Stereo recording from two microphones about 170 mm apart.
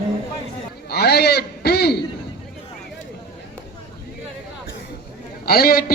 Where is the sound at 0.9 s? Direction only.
70° left (ahead or behind).